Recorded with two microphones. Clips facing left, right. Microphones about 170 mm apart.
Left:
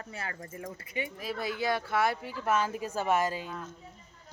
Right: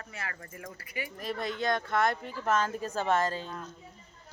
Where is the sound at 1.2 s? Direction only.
5° left (ahead or behind).